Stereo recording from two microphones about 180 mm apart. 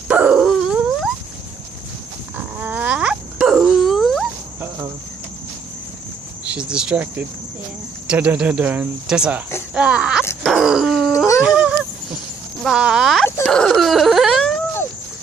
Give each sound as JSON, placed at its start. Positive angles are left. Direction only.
{"t": 0.1, "sound": "dog", "side_deg": -5}
{"t": 2.3, "sound": "a sound", "side_deg": -10}
{"t": 4.6, "sound": "cricket", "side_deg": -20}
{"t": 6.4, "sound": "speech", "side_deg": -5}
{"t": 10.4, "sound": "groan", "side_deg": 0}
{"t": 11.4, "sound": "goose", "side_deg": -5}
{"t": 12.6, "sound": "whimper", "side_deg": -5}